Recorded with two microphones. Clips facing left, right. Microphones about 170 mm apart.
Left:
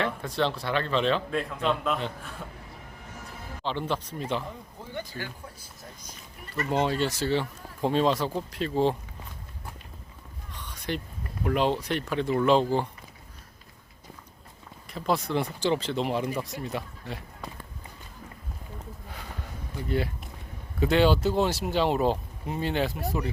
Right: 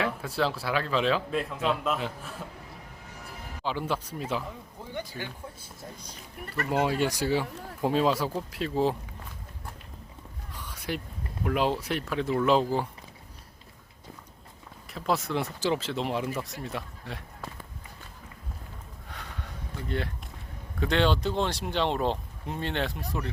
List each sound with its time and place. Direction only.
0.0 s speech: 5° right (ahead or behind)
3.6 s speech: 5° right (ahead or behind)
4.9 s speech: 15° right (ahead or behind)
6.7 s speech: 5° right (ahead or behind)
10.6 s a sound: 5° right (ahead or behind)
11.4 s speech: 5° right (ahead or behind)
14.9 s speech: centre (ahead or behind)
19.0 s sniff: 5° left (ahead or behind)
19.9 s speech: 5° left (ahead or behind)